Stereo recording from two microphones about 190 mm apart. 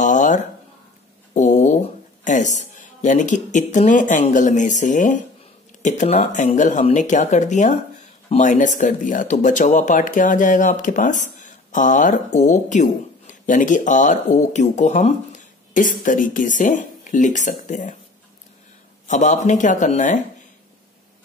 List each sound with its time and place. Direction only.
0.0 s a sound: 40° left (ahead or behind)
1.3 s speech: 40° left (ahead or behind)
19.0 s speech: 40° left (ahead or behind)